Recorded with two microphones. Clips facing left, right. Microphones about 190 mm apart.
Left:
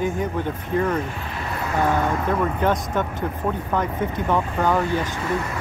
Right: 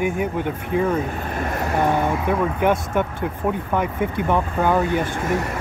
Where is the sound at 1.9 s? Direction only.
15° right (ahead or behind).